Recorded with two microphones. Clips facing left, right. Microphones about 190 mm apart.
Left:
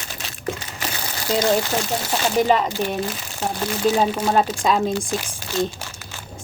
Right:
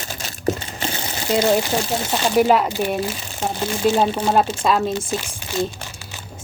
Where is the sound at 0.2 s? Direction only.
40° right (ahead or behind).